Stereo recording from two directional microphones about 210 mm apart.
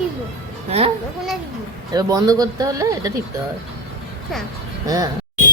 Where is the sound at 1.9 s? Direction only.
20° right (ahead or behind).